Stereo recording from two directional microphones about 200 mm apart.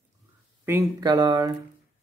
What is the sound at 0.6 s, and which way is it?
Speech, 10° right (ahead or behind).